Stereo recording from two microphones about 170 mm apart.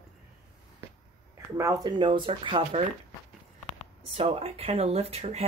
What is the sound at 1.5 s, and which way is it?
Speech, 20° right (ahead or behind).